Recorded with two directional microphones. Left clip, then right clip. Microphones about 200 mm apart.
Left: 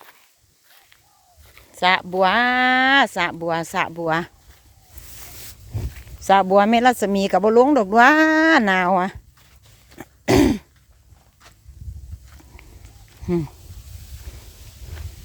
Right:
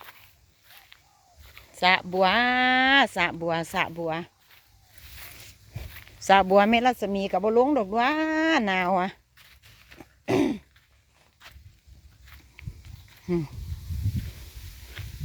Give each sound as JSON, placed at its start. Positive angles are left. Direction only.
{"t": 1.5, "sound": "speech", "side_deg": 10}
{"t": 3.9, "sound": "speech", "side_deg": 25}
{"t": 5.9, "sound": "speech", "side_deg": 0}
{"t": 10.0, "sound": "throat clearing", "side_deg": 30}
{"t": 13.2, "sound": "speech", "side_deg": 5}
{"t": 15.0, "sound": "a sound", "side_deg": -5}